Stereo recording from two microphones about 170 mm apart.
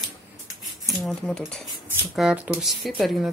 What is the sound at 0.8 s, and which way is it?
Speech, centre (ahead or behind).